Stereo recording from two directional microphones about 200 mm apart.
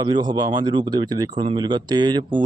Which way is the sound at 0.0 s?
20° right (ahead or behind).